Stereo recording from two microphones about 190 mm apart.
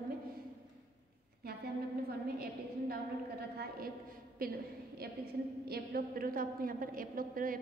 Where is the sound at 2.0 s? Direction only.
55° right (ahead or behind).